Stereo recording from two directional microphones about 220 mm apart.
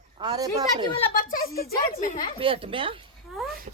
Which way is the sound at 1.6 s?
40° left (ahead or behind).